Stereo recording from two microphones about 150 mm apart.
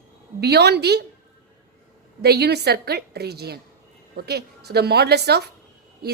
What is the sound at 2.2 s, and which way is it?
A woman's voice, 90° right.